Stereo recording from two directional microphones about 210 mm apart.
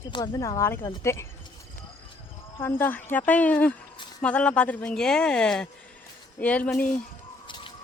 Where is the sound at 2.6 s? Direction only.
10° left (ahead or behind).